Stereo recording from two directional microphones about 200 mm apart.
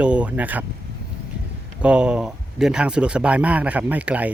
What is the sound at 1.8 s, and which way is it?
Speech, 5° right (ahead or behind).